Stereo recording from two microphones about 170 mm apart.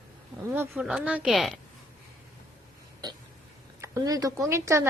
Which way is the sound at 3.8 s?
20° right (ahead or behind).